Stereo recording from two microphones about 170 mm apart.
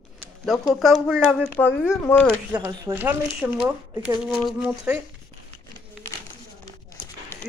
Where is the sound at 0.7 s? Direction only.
Centre (ahead or behind).